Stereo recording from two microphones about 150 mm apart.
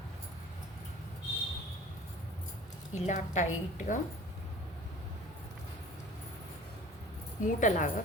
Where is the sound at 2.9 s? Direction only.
50° left (ahead or behind).